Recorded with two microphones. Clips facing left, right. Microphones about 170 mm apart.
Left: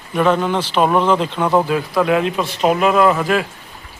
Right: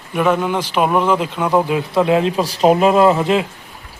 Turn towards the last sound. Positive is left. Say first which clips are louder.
# right 2 dB
turn(degrees=-25)  # may be behind; listen again after turning